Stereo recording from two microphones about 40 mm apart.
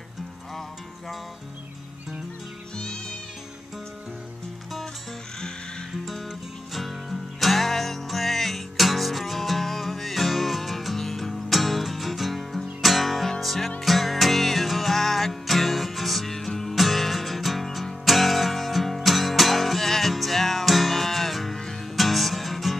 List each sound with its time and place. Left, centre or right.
6.7 s music: centre